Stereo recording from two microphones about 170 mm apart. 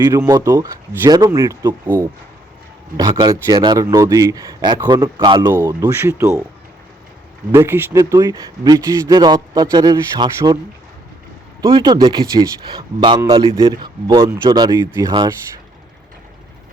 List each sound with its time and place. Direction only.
0.0 s speech: 20° right (ahead or behind)
5.1 s speech: 25° right (ahead or behind)
7.5 s speech: 15° right (ahead or behind)
11.6 s speech: 25° right (ahead or behind)